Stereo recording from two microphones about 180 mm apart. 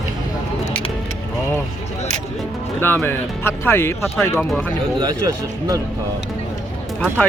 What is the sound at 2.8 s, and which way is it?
Speech, 10° left (ahead or behind).